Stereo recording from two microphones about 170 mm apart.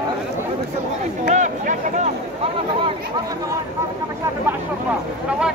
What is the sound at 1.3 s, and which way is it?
Speech, 45° right (ahead or behind).